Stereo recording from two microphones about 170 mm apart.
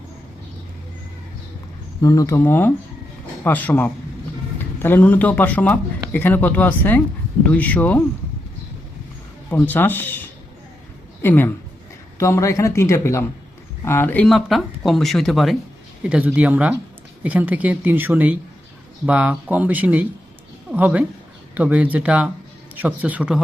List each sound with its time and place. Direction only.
2.0 s speech: 20° left (ahead or behind)
9.5 s speech: 10° left (ahead or behind)
14.3 s speech: centre (ahead or behind)